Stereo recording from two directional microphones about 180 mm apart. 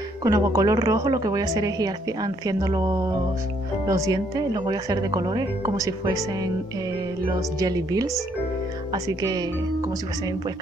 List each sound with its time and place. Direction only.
0.2 s a woman's voice: 20° right (ahead or behind)